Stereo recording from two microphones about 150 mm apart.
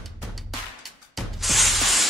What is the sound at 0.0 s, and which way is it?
Music, centre (ahead or behind).